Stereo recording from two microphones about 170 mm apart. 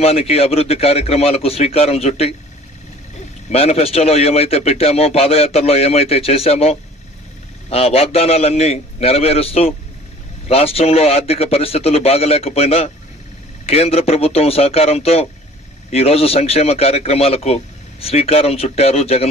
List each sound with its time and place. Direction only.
0.0 s a man's voice: 35° left (ahead or behind)
3.4 s a man's voice: 35° left (ahead or behind)